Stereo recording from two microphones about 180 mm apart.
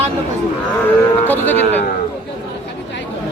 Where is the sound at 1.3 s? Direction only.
10° left (ahead or behind).